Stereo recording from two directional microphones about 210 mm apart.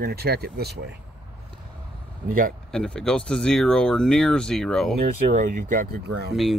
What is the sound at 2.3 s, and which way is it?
Speech, 40° right (ahead or behind).